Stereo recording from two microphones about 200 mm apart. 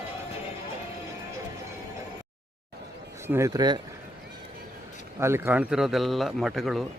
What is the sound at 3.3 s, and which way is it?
Speech, 15° right (ahead or behind).